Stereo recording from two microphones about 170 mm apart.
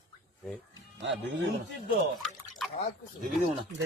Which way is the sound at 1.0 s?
90° right.